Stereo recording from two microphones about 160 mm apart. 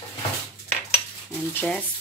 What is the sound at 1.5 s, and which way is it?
Speech, 10° left (ahead or behind).